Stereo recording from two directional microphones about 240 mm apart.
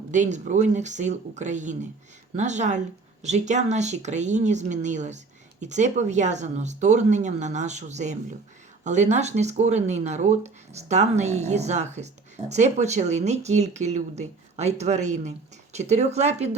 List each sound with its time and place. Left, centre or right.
0.1 s speech: right